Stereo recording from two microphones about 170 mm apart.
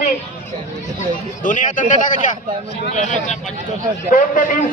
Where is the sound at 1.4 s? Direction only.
50° left (ahead or behind).